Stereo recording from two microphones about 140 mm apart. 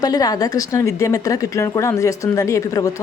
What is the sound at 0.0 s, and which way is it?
Speech, 25° left (ahead or behind).